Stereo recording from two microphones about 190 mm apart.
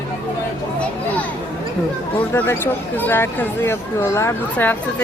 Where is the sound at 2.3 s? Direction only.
10° left (ahead or behind).